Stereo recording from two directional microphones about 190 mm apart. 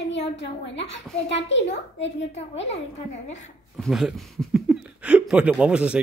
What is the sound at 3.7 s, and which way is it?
Speech, centre (ahead or behind).